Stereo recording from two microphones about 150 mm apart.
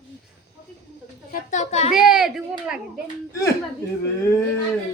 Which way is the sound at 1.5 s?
50° left (ahead or behind).